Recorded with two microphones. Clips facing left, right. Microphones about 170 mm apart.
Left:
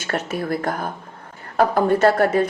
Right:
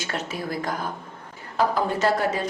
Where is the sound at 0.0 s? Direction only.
55° left (ahead or behind).